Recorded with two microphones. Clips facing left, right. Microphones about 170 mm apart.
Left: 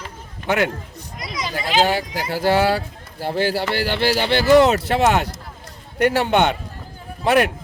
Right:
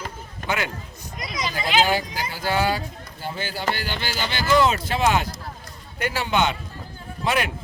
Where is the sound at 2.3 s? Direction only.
65° left (ahead or behind).